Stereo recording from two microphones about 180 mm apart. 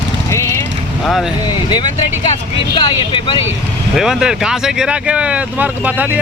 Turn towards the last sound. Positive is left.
turn(degrees=-10)  # may be behind; listen again after turning